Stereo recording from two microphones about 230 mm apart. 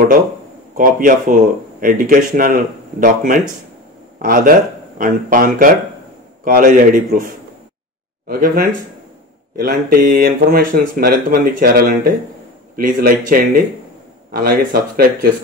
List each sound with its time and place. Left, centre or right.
0.7 s speech: right